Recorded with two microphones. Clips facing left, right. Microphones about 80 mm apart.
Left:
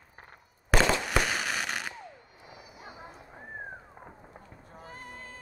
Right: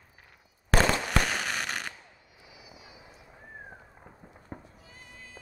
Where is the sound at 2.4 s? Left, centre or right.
Left.